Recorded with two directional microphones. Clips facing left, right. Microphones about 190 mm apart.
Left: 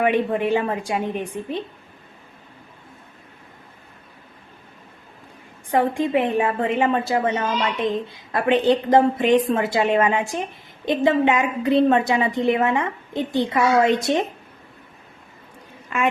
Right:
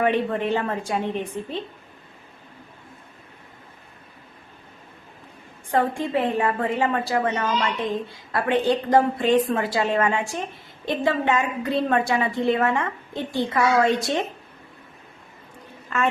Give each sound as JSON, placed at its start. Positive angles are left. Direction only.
{"t": 0.0, "sound": "a woman's voice", "side_deg": 15}
{"t": 5.7, "sound": "a woman's voice", "side_deg": 20}
{"t": 15.9, "sound": "a woman's voice", "side_deg": 15}